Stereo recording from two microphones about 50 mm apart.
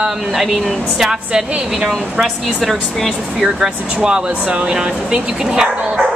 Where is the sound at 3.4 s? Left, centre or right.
Centre.